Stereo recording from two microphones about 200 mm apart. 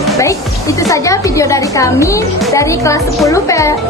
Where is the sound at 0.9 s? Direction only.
15° left (ahead or behind).